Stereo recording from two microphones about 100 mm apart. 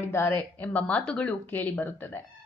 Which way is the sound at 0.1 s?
25° left (ahead or behind).